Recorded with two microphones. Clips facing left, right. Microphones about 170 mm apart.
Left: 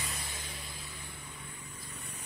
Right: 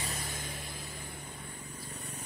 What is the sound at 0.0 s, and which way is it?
Vehicle, 45° right (ahead or behind).